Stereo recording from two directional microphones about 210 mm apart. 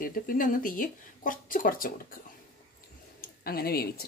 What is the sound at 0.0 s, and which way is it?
Speech, 40° left (ahead or behind).